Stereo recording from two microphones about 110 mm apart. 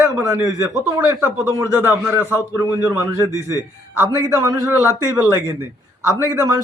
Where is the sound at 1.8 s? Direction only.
20° right (ahead or behind).